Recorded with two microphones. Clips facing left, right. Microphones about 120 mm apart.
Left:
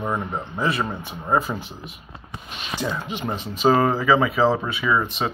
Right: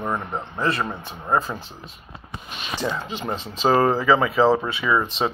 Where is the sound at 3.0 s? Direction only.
15° left (ahead or behind).